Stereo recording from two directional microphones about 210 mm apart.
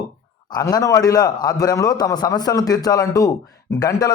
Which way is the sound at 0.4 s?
20° left (ahead or behind).